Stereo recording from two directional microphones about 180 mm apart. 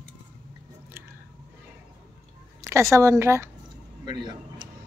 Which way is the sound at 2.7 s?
15° right (ahead or behind).